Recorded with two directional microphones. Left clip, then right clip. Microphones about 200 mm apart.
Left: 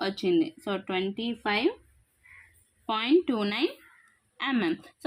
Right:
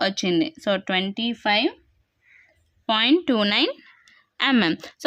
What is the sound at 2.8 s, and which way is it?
A woman's voice, 45° right (ahead or behind).